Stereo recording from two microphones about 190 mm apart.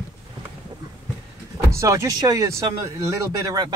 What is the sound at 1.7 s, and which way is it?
Speech, 15° right (ahead or behind).